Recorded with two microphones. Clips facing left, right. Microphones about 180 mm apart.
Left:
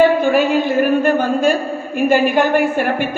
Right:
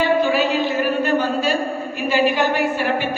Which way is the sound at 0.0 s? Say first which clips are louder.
Left 5 dB; 50° left (ahead or behind).